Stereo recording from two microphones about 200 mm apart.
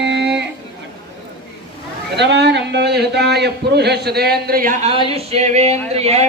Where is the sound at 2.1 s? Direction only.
60° right (ahead or behind).